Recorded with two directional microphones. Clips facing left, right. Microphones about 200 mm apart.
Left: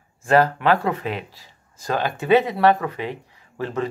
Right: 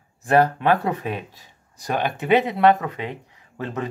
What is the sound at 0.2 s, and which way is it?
Speech, 20° right (ahead or behind).